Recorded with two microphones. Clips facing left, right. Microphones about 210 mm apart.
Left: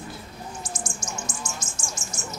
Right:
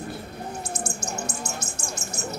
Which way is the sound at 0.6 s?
60° right (ahead or behind).